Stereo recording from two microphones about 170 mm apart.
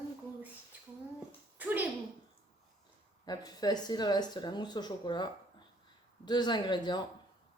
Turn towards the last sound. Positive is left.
turn(degrees=25)  # may be behind; listen again after turning